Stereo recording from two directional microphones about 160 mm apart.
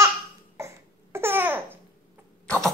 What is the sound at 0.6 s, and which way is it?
Babbling, 15° right (ahead or behind).